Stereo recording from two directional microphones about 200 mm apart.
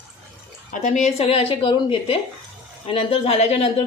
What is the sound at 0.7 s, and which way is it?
Speech, 35° left (ahead or behind).